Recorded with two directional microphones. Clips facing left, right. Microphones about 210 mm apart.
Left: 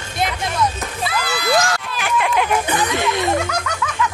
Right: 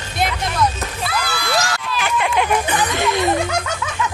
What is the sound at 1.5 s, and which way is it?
Run, 50° left (ahead or behind).